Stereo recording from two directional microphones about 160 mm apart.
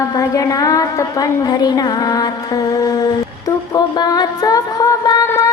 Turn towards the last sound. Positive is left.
turn(degrees=20)  # may be behind; listen again after turning